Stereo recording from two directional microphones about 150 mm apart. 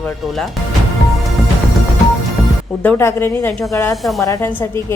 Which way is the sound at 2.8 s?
15° left (ahead or behind).